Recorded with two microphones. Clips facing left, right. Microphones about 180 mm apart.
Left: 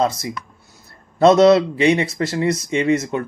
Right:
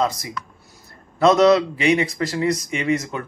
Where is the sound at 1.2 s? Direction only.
25° left (ahead or behind).